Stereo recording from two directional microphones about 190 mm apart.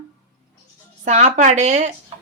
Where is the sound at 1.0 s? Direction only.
35° right (ahead or behind).